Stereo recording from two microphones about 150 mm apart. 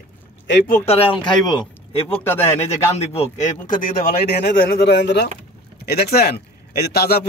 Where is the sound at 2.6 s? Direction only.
45° left (ahead or behind).